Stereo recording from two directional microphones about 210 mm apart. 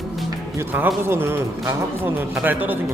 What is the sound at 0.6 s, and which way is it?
A man's voice, 10° right (ahead or behind).